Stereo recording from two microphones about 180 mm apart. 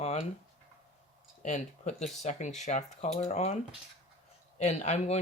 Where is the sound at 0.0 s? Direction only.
35° left (ahead or behind).